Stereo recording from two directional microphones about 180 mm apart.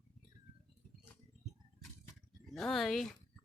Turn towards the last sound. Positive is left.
turn(degrees=0)  # may be behind; listen again after turning